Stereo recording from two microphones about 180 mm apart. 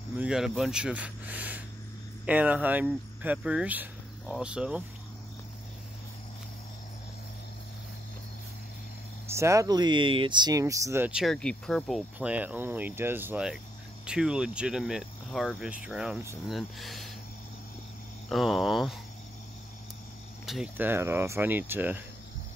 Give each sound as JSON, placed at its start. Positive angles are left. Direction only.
{"t": 0.2, "sound": "speech", "side_deg": -5}
{"t": 9.4, "sound": "speech", "side_deg": -15}
{"t": 18.3, "sound": "speech", "side_deg": 0}
{"t": 20.4, "sound": "speech", "side_deg": -5}